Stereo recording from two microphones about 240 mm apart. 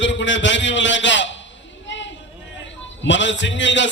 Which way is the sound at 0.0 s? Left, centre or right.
Left.